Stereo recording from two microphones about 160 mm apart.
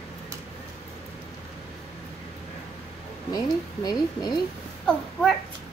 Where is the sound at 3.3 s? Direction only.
25° left (ahead or behind).